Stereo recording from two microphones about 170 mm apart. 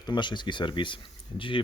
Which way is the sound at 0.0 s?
25° left (ahead or behind).